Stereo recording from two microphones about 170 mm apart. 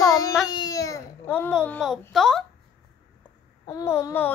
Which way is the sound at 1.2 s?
5° left (ahead or behind).